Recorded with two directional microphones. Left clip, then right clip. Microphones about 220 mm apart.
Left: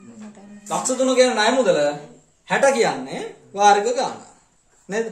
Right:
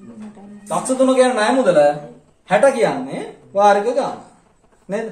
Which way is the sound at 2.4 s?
35° left (ahead or behind).